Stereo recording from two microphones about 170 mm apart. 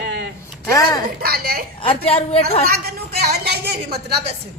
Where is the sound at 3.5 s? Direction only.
70° right (ahead or behind).